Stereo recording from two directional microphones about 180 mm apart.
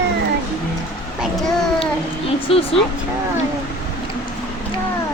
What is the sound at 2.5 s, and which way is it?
Speech, 30° left (ahead or behind).